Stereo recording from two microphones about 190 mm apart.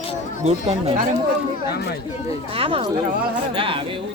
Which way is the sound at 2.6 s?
30° right (ahead or behind).